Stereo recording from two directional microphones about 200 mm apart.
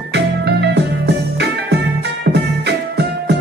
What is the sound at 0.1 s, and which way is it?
Music, 55° right (ahead or behind).